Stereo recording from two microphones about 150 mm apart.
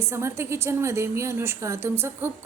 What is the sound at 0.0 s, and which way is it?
A woman's voice, 15° right (ahead or behind).